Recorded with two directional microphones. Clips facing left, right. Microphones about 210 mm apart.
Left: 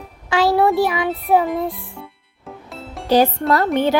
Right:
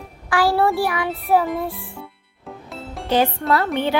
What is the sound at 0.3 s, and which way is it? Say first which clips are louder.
Speech: left 2 dB; 20° left (ahead or behind).